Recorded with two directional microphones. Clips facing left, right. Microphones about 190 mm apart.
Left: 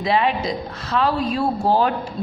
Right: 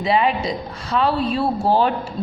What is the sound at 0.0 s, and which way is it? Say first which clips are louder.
A man's voice: right 1 dB; centre (ahead or behind).